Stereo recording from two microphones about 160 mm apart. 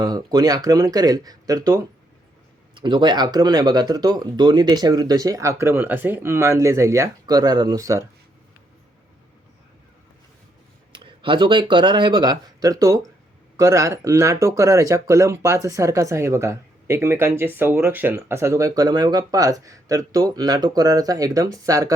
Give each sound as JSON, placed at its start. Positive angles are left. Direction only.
{"t": 0.0, "sound": "speech", "side_deg": -25}
{"t": 10.9, "sound": "speech", "side_deg": -30}